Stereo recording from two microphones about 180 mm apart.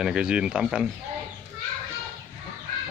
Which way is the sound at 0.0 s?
5° right (ahead or behind).